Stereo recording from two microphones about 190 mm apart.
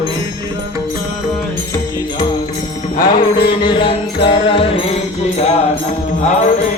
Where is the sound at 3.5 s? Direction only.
25° left (ahead or behind).